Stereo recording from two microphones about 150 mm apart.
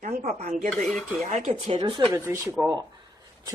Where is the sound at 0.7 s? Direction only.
Centre (ahead or behind).